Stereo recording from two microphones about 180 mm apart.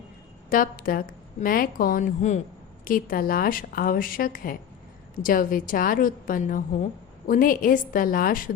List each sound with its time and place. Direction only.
0.5 s a woman's voice: 50° left (ahead or behind)